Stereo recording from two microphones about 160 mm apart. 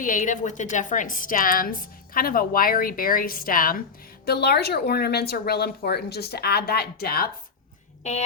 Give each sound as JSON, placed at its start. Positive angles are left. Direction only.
{"t": 0.0, "sound": "a woman's voice", "side_deg": 55}
{"t": 4.3, "sound": "speech", "side_deg": 90}